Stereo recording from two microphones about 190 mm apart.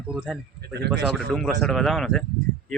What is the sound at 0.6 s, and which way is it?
Speech, 60° right (ahead or behind).